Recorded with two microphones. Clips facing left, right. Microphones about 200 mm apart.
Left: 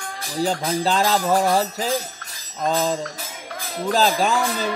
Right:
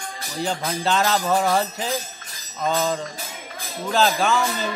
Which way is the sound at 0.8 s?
35° left (ahead or behind).